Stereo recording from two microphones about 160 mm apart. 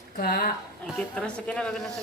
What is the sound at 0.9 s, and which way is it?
A woman's voice, 5° left (ahead or behind).